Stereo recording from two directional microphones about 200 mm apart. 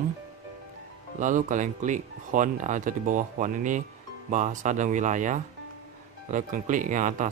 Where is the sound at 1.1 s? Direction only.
40° right (ahead or behind).